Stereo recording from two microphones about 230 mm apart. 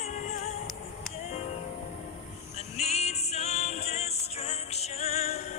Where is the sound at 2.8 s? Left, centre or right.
Left.